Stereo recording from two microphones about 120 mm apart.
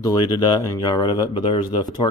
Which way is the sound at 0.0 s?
35° left (ahead or behind).